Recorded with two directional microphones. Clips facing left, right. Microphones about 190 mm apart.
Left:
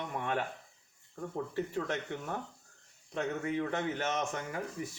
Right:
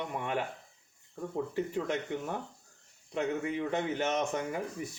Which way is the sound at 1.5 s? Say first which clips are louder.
Right 1 dB; 15° right (ahead or behind).